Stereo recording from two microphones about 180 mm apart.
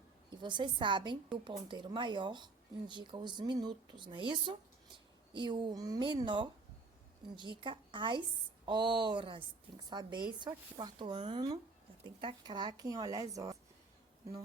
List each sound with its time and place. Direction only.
0.3 s a woman's voice: 25° right (ahead or behind)